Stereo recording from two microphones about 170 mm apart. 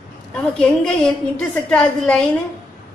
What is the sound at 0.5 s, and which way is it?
A woman's voice, 5° left (ahead or behind).